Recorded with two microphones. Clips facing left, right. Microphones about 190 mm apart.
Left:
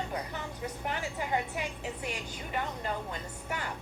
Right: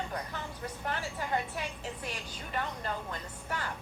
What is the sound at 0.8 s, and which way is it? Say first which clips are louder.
A woman's voice: even; 15° left (ahead or behind).